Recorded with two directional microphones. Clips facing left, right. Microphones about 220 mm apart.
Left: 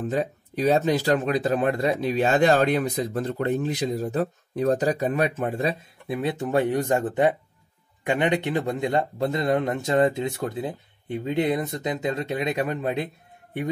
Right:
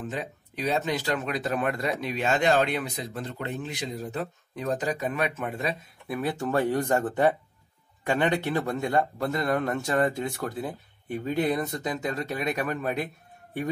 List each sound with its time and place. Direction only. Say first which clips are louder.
0.0 s speech: left 8 dB; 40° left (ahead or behind); by 13.7 s 20° left (ahead or behind)